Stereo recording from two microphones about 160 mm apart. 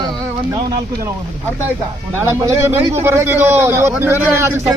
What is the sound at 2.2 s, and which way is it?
A man's voice, 15° right (ahead or behind).